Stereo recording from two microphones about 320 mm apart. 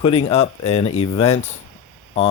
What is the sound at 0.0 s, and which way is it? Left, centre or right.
Speech, centre.